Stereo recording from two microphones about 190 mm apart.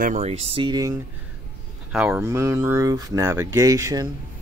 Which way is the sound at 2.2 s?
15° right (ahead or behind).